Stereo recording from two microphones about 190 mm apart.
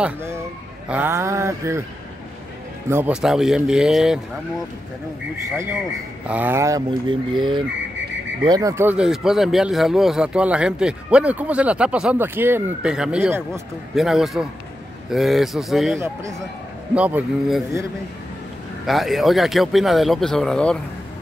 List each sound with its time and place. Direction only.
0.0 s speech: 15° right (ahead or behind)
2.9 s speech: 10° right (ahead or behind)
6.2 s speech: 10° right (ahead or behind)
18.9 s speech: centre (ahead or behind)